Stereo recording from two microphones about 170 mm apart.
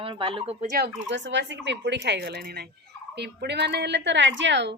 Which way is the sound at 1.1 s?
90° right.